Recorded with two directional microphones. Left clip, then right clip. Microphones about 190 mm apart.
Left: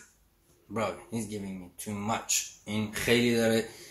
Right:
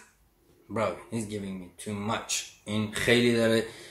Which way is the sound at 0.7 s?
5° right (ahead or behind).